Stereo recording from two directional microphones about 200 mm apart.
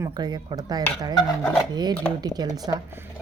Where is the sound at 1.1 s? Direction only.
5° left (ahead or behind).